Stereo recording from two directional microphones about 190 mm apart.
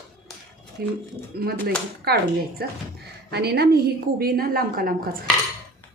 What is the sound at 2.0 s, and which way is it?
A woman's voice, 55° right (ahead or behind).